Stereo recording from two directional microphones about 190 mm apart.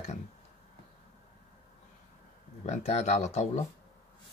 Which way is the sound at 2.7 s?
35° left (ahead or behind).